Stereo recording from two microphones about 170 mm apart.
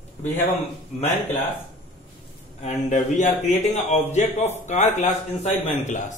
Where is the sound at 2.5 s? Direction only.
45° left (ahead or behind).